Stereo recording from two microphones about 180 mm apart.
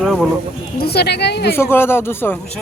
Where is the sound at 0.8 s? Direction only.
65° left (ahead or behind).